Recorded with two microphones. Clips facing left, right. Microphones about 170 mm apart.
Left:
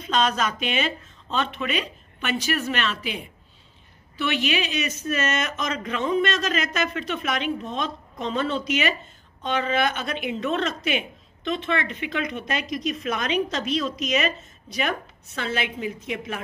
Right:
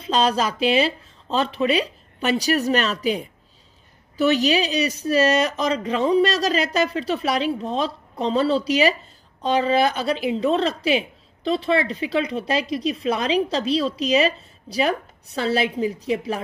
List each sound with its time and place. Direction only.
0.0 s a woman's voice: 30° right (ahead or behind)